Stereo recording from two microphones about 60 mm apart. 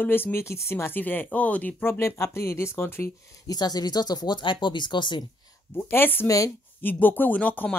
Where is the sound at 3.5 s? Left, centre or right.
Left.